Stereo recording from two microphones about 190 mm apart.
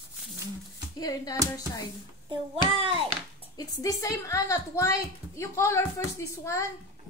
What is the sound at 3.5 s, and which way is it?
A woman's voice, 20° left (ahead or behind).